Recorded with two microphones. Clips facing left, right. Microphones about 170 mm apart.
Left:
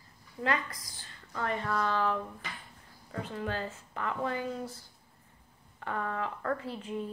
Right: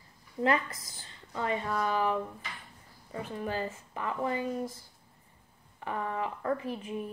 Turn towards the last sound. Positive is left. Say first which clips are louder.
# right 1 dB
turn(degrees=-10)  # may be behind; listen again after turning